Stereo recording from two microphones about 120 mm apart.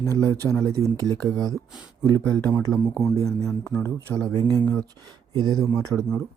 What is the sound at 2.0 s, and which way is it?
Speech, 15° left (ahead or behind).